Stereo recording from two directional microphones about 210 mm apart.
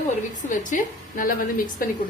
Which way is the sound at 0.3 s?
35° left (ahead or behind).